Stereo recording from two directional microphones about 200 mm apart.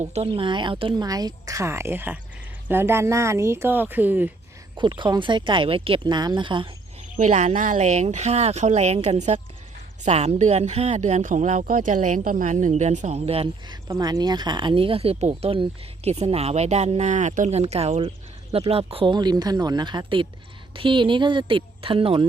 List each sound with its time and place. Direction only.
0.1 s speech: 30° right (ahead or behind); by 4.3 s 10° right (ahead or behind)
4.8 s speech: 25° right (ahead or behind)
7.2 s speech: 35° right (ahead or behind)